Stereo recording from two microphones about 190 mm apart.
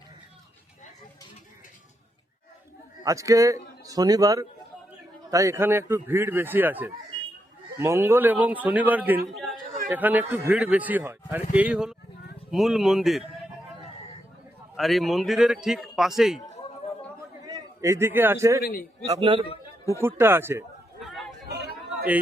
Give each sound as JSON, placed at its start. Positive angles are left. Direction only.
{"t": 3.0, "sound": "a man's voice", "side_deg": -15}
{"t": 14.8, "sound": "a man's voice", "side_deg": 0}
{"t": 17.4, "sound": "a man's voice", "side_deg": -20}
{"t": 18.6, "sound": "a man's voice", "side_deg": 50}
{"t": 19.1, "sound": "a man's voice", "side_deg": -25}
{"t": 20.0, "sound": "a man's voice", "side_deg": -10}
{"t": 21.0, "sound": "a sound", "side_deg": 0}
{"t": 21.4, "sound": "a sound", "side_deg": -60}